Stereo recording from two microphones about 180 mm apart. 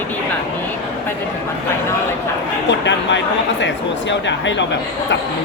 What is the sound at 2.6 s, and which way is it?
Speech, 75° left (ahead or behind).